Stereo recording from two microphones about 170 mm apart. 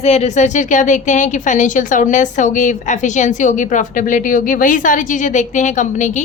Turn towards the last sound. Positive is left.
turn(degrees=45)  # may be behind; listen again after turning